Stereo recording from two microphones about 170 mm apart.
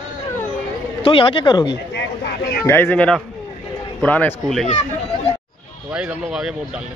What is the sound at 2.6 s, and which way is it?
A man's voice, 15° left (ahead or behind).